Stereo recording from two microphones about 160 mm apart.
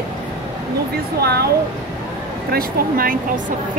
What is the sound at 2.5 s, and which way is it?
Speech, 65° right (ahead or behind).